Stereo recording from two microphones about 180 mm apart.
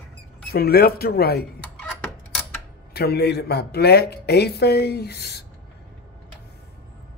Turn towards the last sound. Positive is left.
turn(degrees=60)  # may be behind; listen again after turning